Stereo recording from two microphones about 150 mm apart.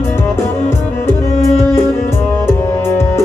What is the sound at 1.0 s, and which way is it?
Music, 15° left (ahead or behind).